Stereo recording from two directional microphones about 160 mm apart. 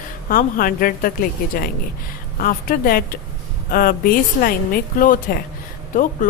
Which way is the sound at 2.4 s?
65° left (ahead or behind).